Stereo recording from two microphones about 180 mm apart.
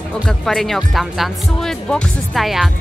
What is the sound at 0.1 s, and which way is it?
Speech, 5° left (ahead or behind).